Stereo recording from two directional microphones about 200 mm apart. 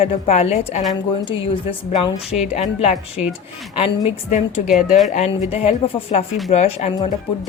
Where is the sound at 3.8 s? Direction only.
30° left (ahead or behind).